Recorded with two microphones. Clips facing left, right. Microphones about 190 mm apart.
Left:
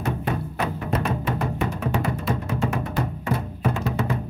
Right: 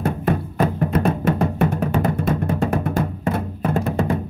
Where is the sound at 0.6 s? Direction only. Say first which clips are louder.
Right 6 dB; 50° right (ahead or behind).